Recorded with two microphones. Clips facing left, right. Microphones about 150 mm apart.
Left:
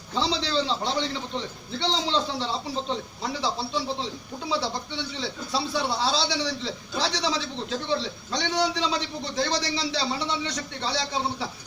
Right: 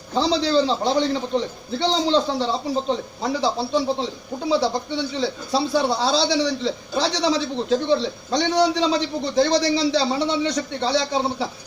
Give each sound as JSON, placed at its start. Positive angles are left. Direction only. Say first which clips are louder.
{"t": 0.1, "sound": "a man's voice", "louder": "right 7 dB", "side_deg": -40}